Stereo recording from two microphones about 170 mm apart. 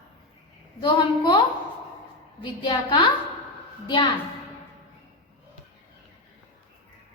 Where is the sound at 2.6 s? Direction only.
30° left (ahead or behind).